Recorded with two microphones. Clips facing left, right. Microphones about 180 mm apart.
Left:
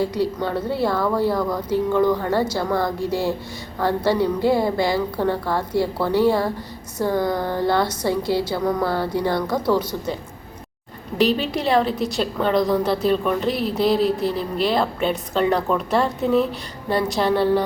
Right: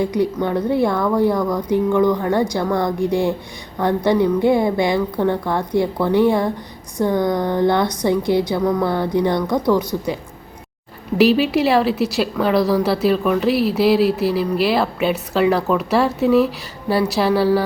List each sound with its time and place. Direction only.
0.0 s speech: 20° right (ahead or behind)
0.9 s a woman's voice: 5° left (ahead or behind)
3.0 s speech: 20° right (ahead or behind)
4.9 s a woman's voice: 5° left (ahead or behind)
5.3 s speech: 20° right (ahead or behind)
7.1 s speech: 5° left (ahead or behind)
7.6 s speech: 20° right (ahead or behind)
8.7 s speech: 10° left (ahead or behind)
9.0 s speech: 20° right (ahead or behind)
9.3 s speech: 5° left (ahead or behind)
11.2 s a woman's voice: 5° right (ahead or behind)